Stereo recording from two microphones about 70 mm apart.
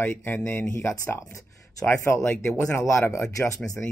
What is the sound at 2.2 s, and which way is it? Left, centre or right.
Speech, left.